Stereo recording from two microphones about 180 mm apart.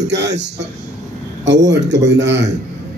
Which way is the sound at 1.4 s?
75° right (ahead or behind).